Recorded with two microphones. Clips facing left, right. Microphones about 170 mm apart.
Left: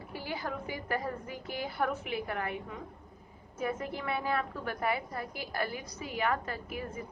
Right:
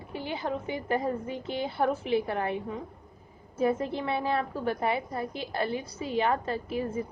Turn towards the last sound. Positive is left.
turn(degrees=-30)  # may be behind; listen again after turning